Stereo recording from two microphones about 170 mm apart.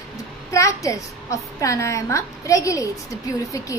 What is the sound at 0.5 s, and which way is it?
Speech, 20° left (ahead or behind).